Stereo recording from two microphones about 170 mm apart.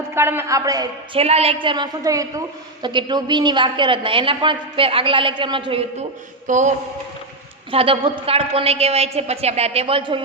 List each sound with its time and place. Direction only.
0.1 s a woman's voice: 15° right (ahead or behind)
1.1 s a woman's voice: 35° right (ahead or behind)
6.5 s a sound: 50° right (ahead or behind)
7.7 s a woman's voice: 30° right (ahead or behind)